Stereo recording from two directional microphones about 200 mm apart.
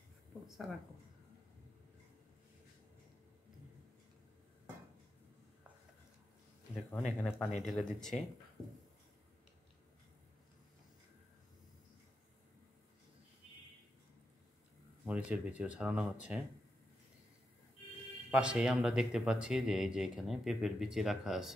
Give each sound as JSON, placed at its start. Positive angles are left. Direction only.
{"t": 0.5, "sound": "speech", "side_deg": 0}
{"t": 6.7, "sound": "speech", "side_deg": 0}
{"t": 15.0, "sound": "speech", "side_deg": -5}
{"t": 18.3, "sound": "speech", "side_deg": -5}